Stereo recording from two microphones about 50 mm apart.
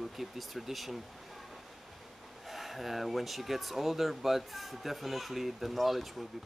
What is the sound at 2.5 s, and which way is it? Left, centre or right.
Speech, centre.